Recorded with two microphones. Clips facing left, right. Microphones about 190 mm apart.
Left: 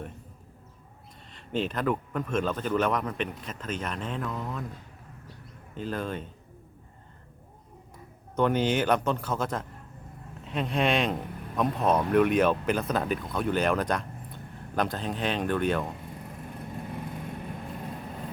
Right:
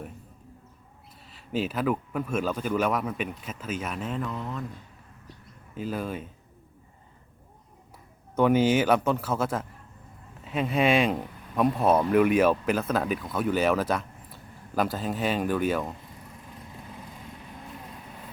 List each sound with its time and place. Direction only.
1.3 s speech: 5° right (ahead or behind)
5.7 s speech: 5° right (ahead or behind)
8.4 s speech: 5° right (ahead or behind)